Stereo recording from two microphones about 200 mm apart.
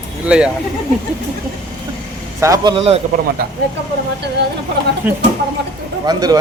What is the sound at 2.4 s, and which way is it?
Speech, 15° right (ahead or behind).